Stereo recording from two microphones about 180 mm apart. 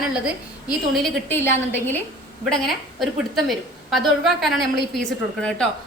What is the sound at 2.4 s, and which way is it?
A woman's voice, centre (ahead or behind).